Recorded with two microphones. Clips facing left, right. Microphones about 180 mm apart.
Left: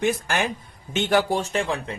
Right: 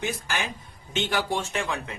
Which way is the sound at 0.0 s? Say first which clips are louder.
Left 7 dB; 55° left (ahead or behind).